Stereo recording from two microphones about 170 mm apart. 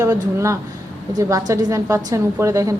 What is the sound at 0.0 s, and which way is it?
A woman's voice, 20° right (ahead or behind).